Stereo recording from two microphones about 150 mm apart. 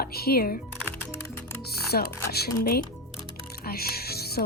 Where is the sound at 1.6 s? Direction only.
90° left.